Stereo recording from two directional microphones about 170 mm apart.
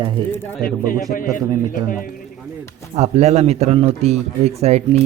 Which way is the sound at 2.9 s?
40° right (ahead or behind).